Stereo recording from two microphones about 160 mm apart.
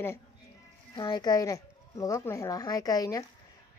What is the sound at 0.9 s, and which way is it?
Speech, 25° left (ahead or behind).